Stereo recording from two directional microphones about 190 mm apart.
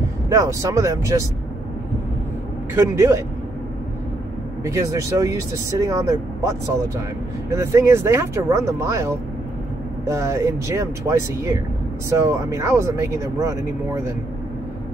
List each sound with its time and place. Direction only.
0.3 s speech: 15° right (ahead or behind)
2.7 s speech: 15° right (ahead or behind)
4.7 s speech: 15° right (ahead or behind)